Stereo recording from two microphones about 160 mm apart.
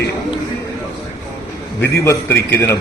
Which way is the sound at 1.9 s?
15° left (ahead or behind).